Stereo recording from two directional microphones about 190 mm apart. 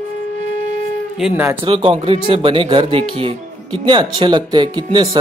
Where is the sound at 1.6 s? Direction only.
30° right (ahead or behind).